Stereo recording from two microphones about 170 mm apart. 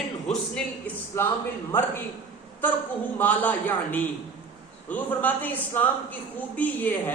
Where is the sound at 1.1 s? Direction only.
15° left (ahead or behind).